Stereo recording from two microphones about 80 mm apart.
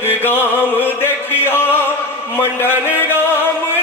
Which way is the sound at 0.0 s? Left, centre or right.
Left.